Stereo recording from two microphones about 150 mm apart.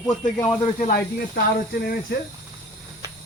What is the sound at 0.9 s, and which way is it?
Speech, 90° left.